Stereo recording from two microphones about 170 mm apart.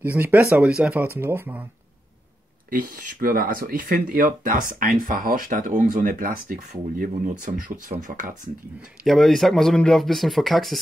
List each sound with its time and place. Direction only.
0.0 s speech: 10° right (ahead or behind)
2.7 s speech: 55° right (ahead or behind)
9.0 s speech: centre (ahead or behind)